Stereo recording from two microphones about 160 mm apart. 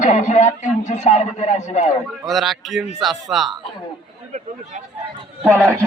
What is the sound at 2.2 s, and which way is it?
A man's voice, centre (ahead or behind).